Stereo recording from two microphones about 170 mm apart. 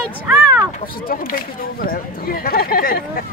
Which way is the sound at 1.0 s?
55° left (ahead or behind).